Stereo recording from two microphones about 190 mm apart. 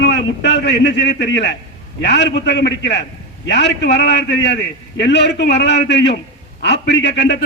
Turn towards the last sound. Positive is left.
turn(degrees=65)  # may be behind; listen again after turning